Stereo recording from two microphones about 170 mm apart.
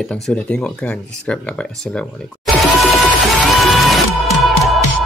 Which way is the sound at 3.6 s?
Centre (ahead or behind).